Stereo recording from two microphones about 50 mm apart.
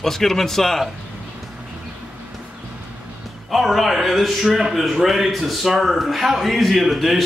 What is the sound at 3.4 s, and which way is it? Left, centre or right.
A man's voice, centre.